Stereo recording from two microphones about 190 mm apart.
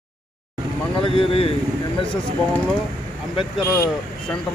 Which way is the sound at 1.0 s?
30° left (ahead or behind).